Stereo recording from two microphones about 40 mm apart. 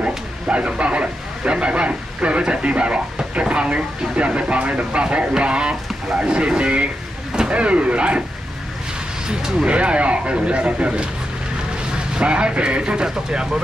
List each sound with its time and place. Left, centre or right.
0.0 s speech: right
9.3 s speech: centre
12.2 s speech: right